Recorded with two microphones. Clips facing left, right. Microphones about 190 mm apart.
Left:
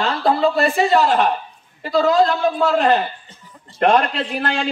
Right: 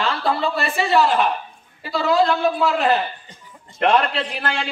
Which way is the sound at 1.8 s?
45° left (ahead or behind).